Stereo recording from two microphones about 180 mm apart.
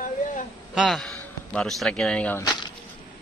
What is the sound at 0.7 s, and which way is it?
Speech, centre (ahead or behind).